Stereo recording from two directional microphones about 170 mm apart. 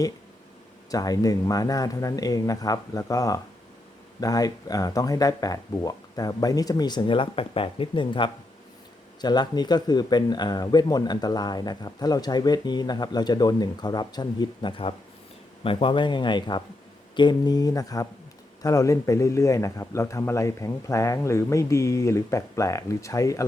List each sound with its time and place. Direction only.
0.9 s speech: 20° left (ahead or behind)